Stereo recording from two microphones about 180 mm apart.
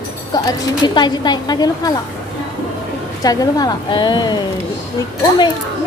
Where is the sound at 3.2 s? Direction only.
20° left (ahead or behind).